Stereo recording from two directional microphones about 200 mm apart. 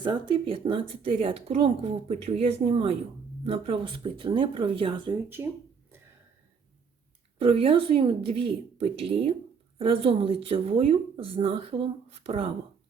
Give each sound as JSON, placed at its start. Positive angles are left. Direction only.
{"t": 0.0, "sound": "a woman's voice", "side_deg": -25}
{"t": 5.4, "sound": "speech", "side_deg": -10}
{"t": 7.3, "sound": "a woman's voice", "side_deg": -30}